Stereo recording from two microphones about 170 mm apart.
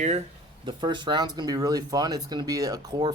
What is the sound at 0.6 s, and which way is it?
Speech, 25° right (ahead or behind).